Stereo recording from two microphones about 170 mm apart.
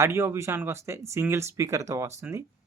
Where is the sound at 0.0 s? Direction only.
15° right (ahead or behind).